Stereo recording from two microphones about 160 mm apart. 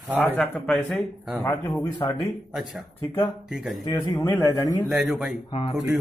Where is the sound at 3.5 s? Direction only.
Centre (ahead or behind).